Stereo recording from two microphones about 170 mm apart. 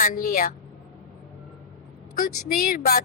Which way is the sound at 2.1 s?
55° left (ahead or behind).